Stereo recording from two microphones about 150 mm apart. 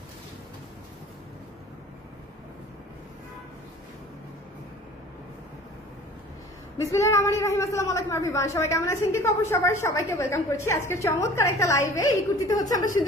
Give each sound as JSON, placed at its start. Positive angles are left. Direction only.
{"t": 6.8, "sound": "a woman's voice", "side_deg": 20}